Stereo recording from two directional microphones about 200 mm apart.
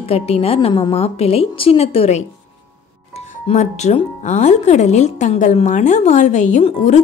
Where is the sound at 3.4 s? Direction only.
35° left (ahead or behind).